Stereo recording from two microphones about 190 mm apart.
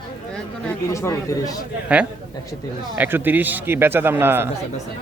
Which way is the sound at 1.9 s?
5° right (ahead or behind).